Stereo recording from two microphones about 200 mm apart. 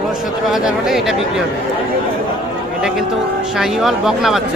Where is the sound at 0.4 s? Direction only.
Centre (ahead or behind).